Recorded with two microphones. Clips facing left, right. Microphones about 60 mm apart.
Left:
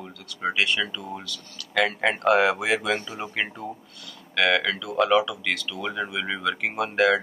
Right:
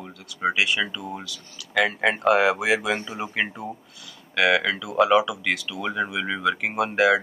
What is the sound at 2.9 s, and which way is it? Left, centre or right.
Speech, right.